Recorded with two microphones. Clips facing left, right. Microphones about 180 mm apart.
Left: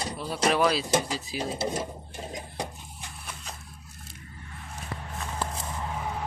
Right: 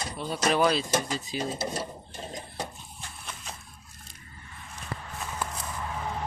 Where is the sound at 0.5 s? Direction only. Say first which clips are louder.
Right 1 dB; centre (ahead or behind).